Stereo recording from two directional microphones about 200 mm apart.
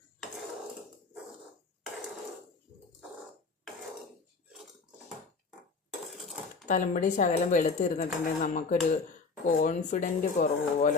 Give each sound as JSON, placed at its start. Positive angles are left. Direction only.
{"t": 6.7, "sound": "speech", "side_deg": 40}